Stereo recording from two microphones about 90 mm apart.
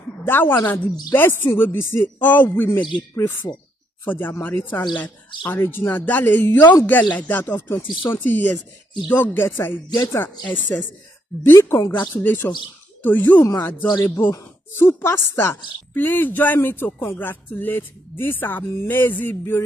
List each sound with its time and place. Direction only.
0.2 s speech: 20° left (ahead or behind)
9.8 s speech: 50° left (ahead or behind)
10.4 s speech: 20° left (ahead or behind)